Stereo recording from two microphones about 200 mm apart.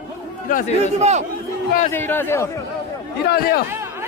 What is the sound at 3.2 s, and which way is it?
Speech, 50° left (ahead or behind).